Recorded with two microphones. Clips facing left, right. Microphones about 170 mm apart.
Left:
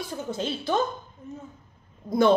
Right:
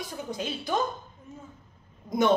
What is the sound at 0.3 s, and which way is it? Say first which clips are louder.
Speech: left 3 dB; 15° right (ahead or behind).